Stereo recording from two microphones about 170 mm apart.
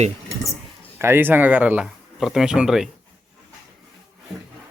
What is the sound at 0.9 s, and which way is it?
Speech, 15° right (ahead or behind).